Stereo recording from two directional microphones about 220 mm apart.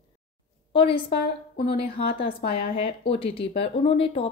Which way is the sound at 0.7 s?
25° left (ahead or behind).